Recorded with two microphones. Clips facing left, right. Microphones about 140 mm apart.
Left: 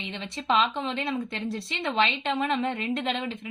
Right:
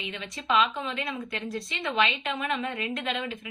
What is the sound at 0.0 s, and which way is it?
A woman's voice, 30° left (ahead or behind).